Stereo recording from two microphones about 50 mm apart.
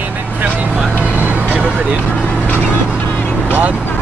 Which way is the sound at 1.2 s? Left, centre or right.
Right.